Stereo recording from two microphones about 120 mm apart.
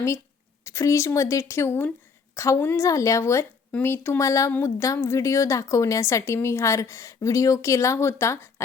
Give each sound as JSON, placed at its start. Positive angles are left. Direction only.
{"t": 0.6, "sound": "a woman's voice", "side_deg": 25}